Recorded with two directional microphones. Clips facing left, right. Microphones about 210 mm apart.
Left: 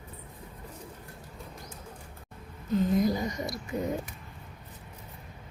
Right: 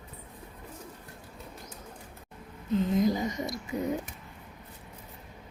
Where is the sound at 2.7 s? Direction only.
20° right (ahead or behind).